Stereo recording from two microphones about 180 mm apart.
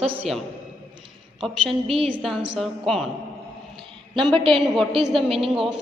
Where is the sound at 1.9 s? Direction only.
30° right (ahead or behind).